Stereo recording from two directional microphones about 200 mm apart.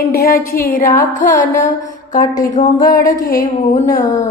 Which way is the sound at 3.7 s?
40° left (ahead or behind).